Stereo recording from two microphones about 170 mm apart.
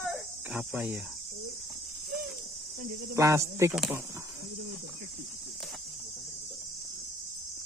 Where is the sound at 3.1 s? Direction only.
15° right (ahead or behind).